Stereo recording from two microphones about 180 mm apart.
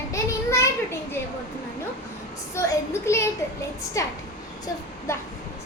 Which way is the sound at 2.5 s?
15° left (ahead or behind).